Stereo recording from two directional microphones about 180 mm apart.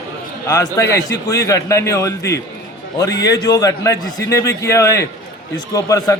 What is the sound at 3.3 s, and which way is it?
A man's voice, 20° left (ahead or behind).